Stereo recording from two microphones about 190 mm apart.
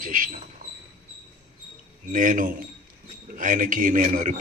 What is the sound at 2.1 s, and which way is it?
A man's voice, 45° right (ahead or behind).